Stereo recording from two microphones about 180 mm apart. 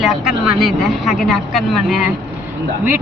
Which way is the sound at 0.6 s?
Centre (ahead or behind).